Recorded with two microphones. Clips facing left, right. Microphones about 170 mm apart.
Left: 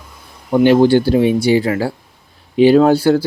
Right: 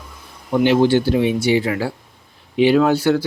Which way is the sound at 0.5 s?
45° left (ahead or behind).